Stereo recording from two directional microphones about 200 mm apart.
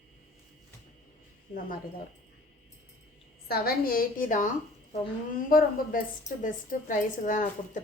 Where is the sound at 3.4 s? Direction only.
50° left (ahead or behind).